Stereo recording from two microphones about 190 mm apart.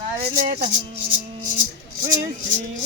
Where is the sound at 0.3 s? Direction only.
40° right (ahead or behind).